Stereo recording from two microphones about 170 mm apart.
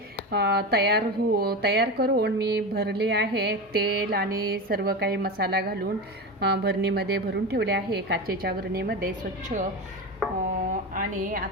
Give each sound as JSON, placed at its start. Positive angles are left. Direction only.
{"t": 0.3, "sound": "a woman's voice", "side_deg": -70}
{"t": 9.5, "sound": "a woman's voice", "side_deg": -45}
{"t": 10.9, "sound": "a woman's voice", "side_deg": -55}